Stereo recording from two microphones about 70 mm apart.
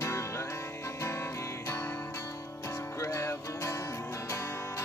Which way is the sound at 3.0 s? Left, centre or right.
Left.